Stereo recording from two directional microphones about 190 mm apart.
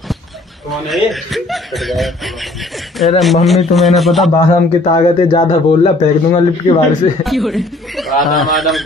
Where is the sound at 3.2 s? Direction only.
Centre (ahead or behind).